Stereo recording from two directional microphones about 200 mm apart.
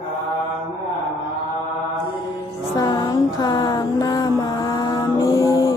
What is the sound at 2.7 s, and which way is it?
Music, 20° left (ahead or behind).